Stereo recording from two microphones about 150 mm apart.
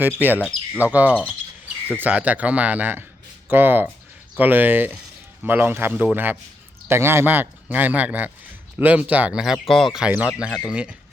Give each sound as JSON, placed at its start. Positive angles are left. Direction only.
{"t": 0.0, "sound": "speech", "side_deg": -10}